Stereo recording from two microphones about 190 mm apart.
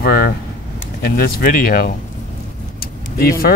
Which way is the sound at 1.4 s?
50° left (ahead or behind).